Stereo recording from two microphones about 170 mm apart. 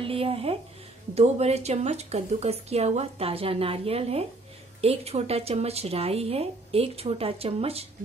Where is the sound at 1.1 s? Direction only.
40° right (ahead or behind).